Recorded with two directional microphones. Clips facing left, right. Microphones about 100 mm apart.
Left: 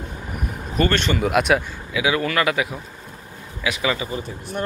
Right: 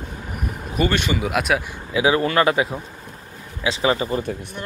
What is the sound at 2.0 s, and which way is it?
Speech, 30° right (ahead or behind).